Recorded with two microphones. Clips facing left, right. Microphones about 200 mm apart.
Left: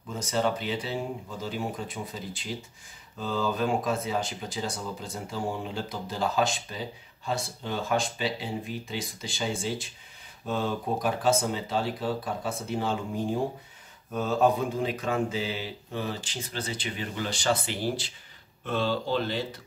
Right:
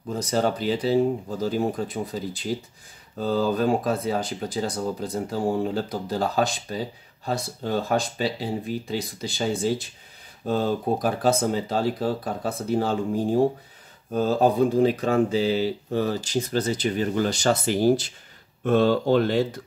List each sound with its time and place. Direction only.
0.1 s speech: 35° right (ahead or behind)